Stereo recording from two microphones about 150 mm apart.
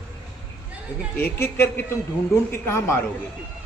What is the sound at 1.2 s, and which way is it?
Speech, 15° left (ahead or behind).